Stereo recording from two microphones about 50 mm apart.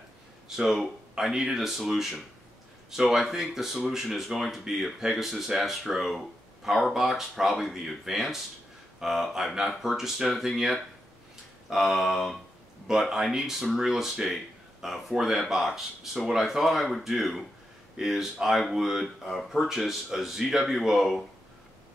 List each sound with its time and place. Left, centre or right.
0.6 s speech: centre